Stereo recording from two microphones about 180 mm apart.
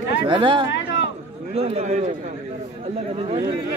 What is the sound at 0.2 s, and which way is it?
A man's voice, 30° right (ahead or behind).